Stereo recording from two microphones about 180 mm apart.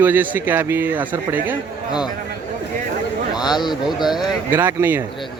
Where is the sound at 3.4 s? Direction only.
25° left (ahead or behind).